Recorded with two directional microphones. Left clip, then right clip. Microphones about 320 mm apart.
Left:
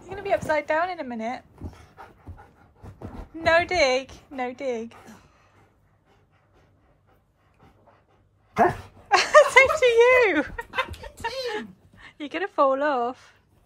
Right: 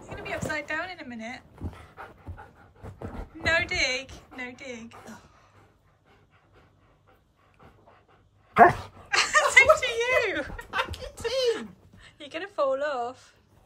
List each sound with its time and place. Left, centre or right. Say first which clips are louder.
0.0 s dog: left 8 dB; centre
8.5 s dog: right 4 dB; centre
9.8 s speech: left 8 dB; centre
11.1 s a sound: right 4 dB; centre
11.5 s speech: left 3 dB; centre